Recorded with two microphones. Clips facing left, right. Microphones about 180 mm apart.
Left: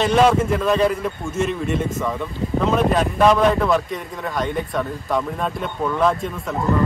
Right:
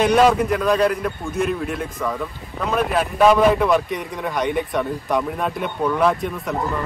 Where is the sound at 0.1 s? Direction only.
Centre (ahead or behind).